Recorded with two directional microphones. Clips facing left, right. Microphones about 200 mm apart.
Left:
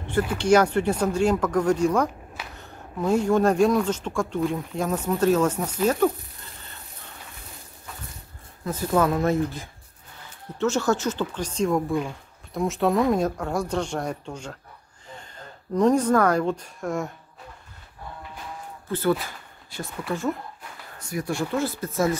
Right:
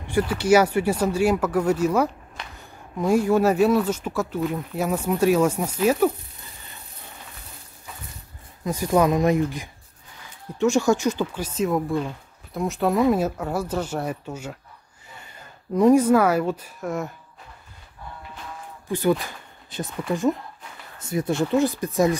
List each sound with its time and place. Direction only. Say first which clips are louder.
0.1 s speech: right 1 dB; 10° right (ahead or behind)
8.6 s a woman's voice: right 2 dB; 15° right (ahead or behind)
18.9 s speech: right 2 dB; 15° right (ahead or behind)